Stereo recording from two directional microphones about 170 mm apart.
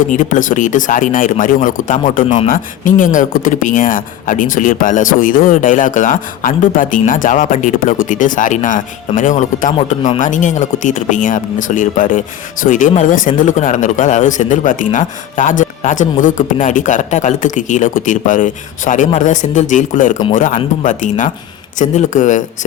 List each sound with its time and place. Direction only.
0.0 s speech: 50° left (ahead or behind)